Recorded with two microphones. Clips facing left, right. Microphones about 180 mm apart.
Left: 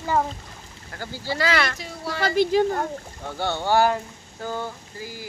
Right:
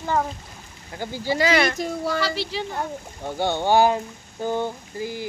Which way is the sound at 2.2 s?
50° left (ahead or behind).